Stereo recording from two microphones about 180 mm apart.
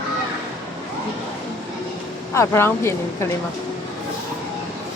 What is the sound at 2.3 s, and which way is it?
Speech, 15° left (ahead or behind).